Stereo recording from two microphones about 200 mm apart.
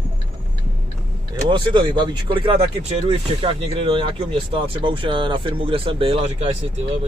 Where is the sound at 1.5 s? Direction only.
25° right (ahead or behind).